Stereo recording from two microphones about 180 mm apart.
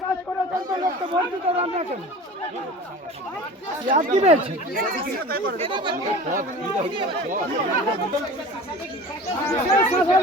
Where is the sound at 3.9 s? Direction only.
40° right (ahead or behind).